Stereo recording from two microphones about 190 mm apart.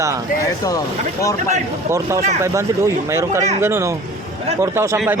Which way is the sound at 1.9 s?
15° right (ahead or behind).